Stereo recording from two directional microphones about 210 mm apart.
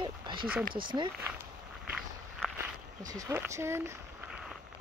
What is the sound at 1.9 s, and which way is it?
Walk, centre (ahead or behind).